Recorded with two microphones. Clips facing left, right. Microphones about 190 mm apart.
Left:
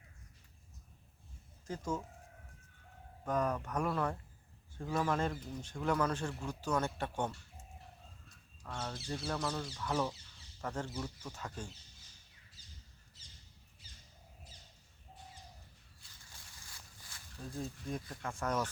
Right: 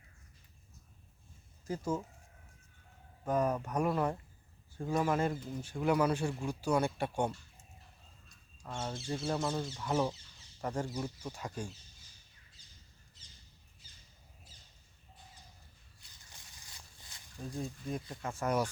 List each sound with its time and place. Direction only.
1.6 s speech: 10° right (ahead or behind)
3.2 s speech: 10° right (ahead or behind)
8.6 s speech: 25° right (ahead or behind)
10.6 s speech: 15° right (ahead or behind)
16.3 s a sound: 20° right (ahead or behind)
18.2 s speech: 10° right (ahead or behind)